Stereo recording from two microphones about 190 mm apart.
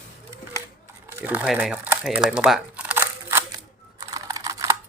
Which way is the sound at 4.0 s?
20° right (ahead or behind).